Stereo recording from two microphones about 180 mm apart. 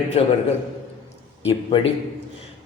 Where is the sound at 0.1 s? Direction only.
35° left (ahead or behind).